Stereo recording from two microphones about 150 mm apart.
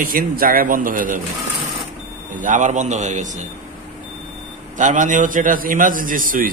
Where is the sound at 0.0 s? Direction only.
70° right (ahead or behind).